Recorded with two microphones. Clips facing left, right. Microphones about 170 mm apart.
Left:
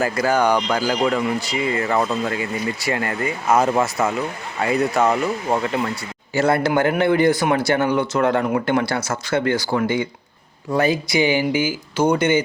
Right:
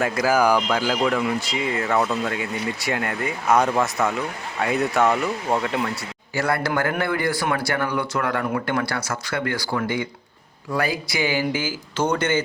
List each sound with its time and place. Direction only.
0.0 s speech: centre (ahead or behind)
6.3 s speech: 25° left (ahead or behind)